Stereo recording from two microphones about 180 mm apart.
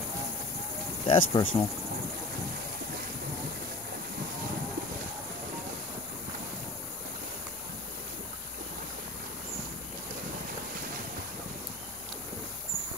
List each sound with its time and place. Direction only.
1.0 s speech: 30° left (ahead or behind)